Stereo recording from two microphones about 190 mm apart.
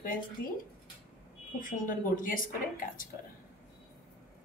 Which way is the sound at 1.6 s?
45° left (ahead or behind).